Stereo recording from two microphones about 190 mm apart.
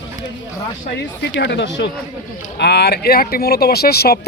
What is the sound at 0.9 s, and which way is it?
Speech, 60° left (ahead or behind).